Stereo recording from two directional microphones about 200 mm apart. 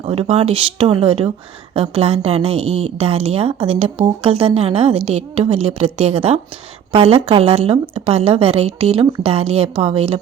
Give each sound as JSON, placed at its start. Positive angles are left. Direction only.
{"t": 0.0, "sound": "a woman's voice", "side_deg": -30}